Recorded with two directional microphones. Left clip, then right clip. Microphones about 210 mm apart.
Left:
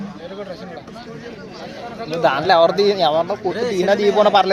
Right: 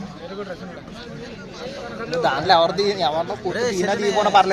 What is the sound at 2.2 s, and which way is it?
Speech, 40° left (ahead or behind).